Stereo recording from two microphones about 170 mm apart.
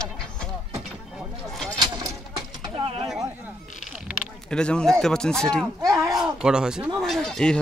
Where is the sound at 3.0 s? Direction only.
5° right (ahead or behind).